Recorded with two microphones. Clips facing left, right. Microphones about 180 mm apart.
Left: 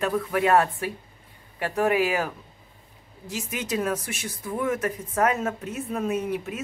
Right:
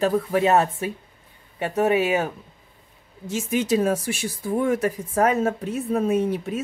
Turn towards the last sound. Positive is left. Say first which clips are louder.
# right 5 dB
turn(degrees=-30)  # may be behind; listen again after turning